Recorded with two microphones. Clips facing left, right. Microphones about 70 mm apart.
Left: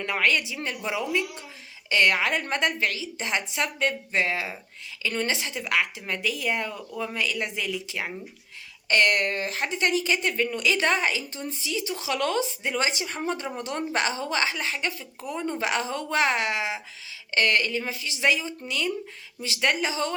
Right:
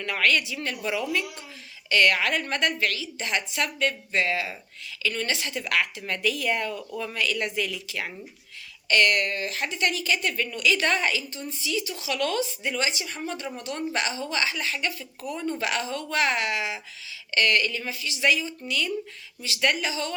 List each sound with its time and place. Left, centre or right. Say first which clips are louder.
0.0 s speech: even; left
8.9 s speech: even; left